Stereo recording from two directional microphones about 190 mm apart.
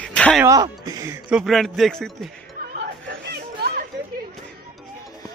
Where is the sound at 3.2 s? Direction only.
55° right (ahead or behind).